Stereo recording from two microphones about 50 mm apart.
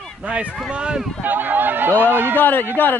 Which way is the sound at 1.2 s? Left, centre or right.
Right.